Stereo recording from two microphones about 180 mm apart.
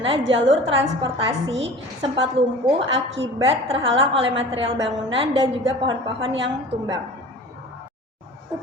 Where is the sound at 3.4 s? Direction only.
30° right (ahead or behind).